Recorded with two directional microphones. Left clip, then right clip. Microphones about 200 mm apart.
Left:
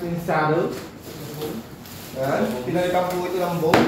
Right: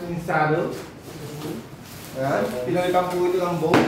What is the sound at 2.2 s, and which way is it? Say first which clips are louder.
Speech: even; 5° left (ahead or behind).